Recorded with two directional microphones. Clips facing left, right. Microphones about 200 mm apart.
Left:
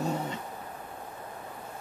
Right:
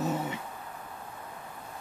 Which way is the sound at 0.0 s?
5° right (ahead or behind).